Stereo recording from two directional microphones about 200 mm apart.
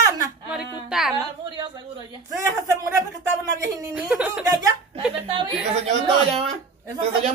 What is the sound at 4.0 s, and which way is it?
Speech, 5° right (ahead or behind).